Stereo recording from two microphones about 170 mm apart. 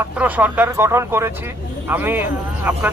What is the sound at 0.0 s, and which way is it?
A man's voice, 10° right (ahead or behind).